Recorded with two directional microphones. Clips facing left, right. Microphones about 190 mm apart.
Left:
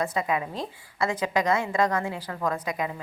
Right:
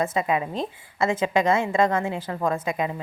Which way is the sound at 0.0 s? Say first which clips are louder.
Right 3 dB; 25° right (ahead or behind).